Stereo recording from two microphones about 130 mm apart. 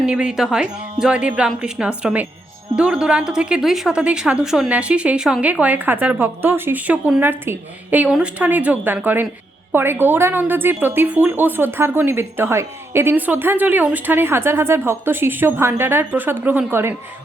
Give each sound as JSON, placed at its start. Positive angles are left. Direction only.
{"t": 0.0, "sound": "a woman's voice", "side_deg": -10}